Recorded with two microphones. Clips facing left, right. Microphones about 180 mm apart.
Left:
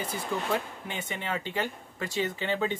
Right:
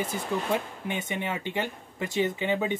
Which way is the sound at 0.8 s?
20° right (ahead or behind).